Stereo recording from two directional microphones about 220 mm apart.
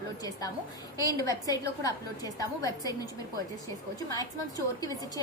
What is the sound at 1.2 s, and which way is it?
A woman's voice, 15° left (ahead or behind).